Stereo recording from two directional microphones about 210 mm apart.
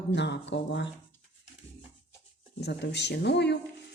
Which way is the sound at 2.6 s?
55° left (ahead or behind).